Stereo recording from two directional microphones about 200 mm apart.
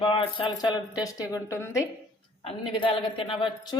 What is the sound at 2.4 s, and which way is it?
A woman's voice, 25° left (ahead or behind).